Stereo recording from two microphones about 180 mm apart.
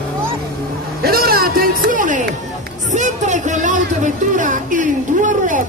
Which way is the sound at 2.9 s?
40° right (ahead or behind).